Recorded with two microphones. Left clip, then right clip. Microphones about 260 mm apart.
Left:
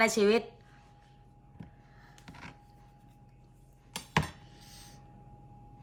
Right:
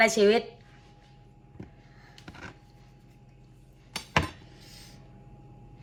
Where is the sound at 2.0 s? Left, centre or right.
Centre.